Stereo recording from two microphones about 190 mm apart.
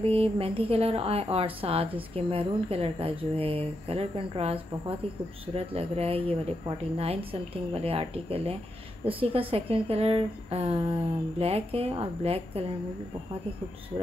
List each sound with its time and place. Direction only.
0.0 s a woman's voice: 30° right (ahead or behind)